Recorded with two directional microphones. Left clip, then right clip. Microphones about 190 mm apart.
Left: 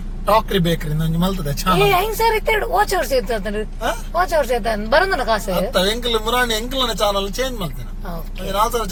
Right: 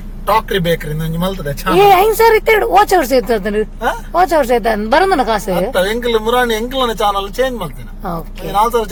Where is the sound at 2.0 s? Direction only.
55° right (ahead or behind).